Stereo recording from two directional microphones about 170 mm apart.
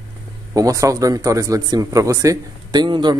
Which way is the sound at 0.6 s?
20° right (ahead or behind).